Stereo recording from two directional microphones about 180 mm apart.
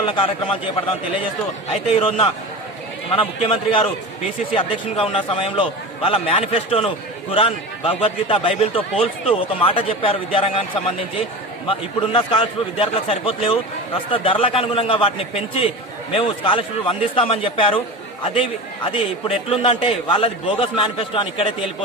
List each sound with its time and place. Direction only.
0.0 s a man's voice: 30° left (ahead or behind)